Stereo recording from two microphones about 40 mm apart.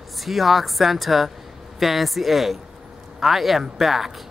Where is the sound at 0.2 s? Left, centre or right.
Centre.